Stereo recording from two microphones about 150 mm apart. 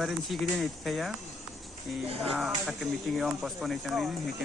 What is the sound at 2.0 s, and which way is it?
Speech, 40° right (ahead or behind).